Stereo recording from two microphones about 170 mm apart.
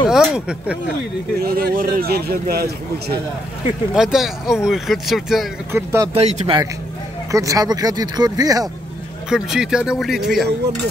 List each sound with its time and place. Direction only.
0.1 s speech: 5° right (ahead or behind)
1.4 s a man's voice: 60° right (ahead or behind)
3.9 s speech: 5° right (ahead or behind)
5.7 s speech: 15° right (ahead or behind)
6.1 s speech: 35° right (ahead or behind)
7.2 s speech: 20° right (ahead or behind)
9.3 s speech: 5° right (ahead or behind)